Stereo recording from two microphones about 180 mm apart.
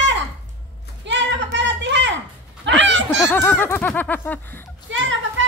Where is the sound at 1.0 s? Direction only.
85° right.